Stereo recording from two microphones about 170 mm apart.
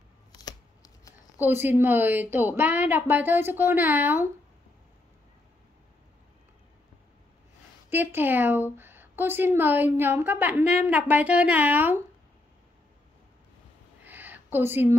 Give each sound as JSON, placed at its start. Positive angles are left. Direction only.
{"t": 0.3, "sound": "shuffling cards", "side_deg": 20}
{"t": 1.4, "sound": "a woman's voice", "side_deg": -10}
{"t": 7.9, "sound": "a woman's voice", "side_deg": -10}
{"t": 14.0, "sound": "a sound", "side_deg": -10}